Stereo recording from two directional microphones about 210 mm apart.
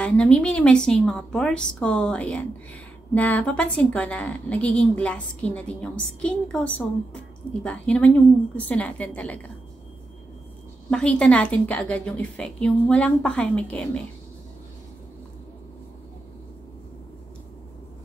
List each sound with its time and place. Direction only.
0.0 s a woman's voice: 5° left (ahead or behind)
10.9 s a woman's voice: 5° left (ahead or behind)